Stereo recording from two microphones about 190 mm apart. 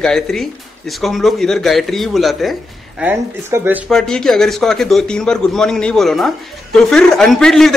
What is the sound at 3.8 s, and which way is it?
A man's voice, 5° left (ahead or behind).